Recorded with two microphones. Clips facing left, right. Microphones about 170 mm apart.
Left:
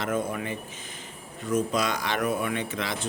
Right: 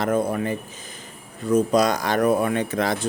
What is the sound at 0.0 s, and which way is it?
Speech, 35° right (ahead or behind).